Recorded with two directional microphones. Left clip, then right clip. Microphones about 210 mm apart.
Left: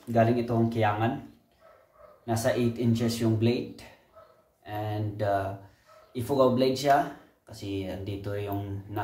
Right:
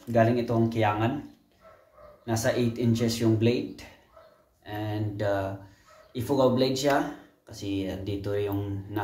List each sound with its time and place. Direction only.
0.1 s speech: 10° right (ahead or behind)
2.2 s speech: 15° right (ahead or behind)